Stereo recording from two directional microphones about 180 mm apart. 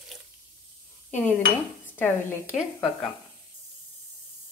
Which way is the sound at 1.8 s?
10° left (ahead or behind).